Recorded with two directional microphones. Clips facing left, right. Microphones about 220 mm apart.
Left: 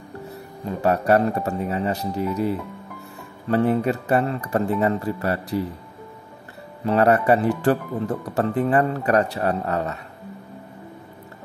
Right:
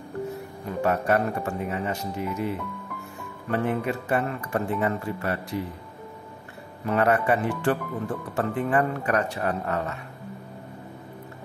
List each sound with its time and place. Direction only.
0.8 s speech: 35° left (ahead or behind)
6.9 s speech: 35° left (ahead or behind)